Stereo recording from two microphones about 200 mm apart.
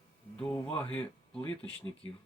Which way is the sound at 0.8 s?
5° left (ahead or behind).